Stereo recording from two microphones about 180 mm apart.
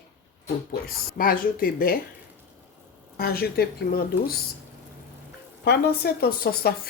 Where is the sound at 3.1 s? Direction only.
60° left (ahead or behind).